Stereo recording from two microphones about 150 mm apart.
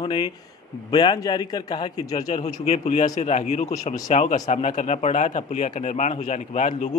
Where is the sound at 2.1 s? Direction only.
45° left (ahead or behind).